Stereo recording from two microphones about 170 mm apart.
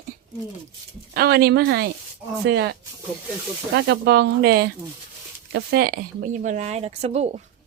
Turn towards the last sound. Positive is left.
turn(degrees=-40)  # may be behind; listen again after turning